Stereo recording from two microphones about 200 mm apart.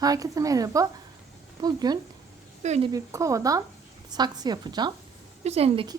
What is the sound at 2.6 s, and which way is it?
Speech, 35° right (ahead or behind).